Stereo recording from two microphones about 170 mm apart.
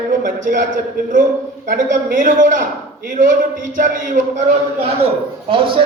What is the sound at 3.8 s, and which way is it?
Speech, 50° right (ahead or behind).